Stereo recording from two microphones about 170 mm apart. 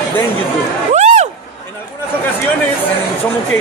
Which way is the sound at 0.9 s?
40° right (ahead or behind).